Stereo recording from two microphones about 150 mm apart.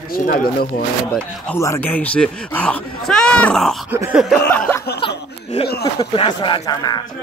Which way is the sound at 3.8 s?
15° right (ahead or behind).